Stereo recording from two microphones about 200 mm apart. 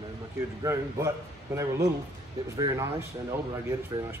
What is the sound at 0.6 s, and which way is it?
Speech, 15° right (ahead or behind).